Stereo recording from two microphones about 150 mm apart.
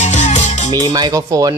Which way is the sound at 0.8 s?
25° right (ahead or behind).